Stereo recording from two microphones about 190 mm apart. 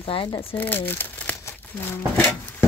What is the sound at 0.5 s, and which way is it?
Speech, 10° left (ahead or behind).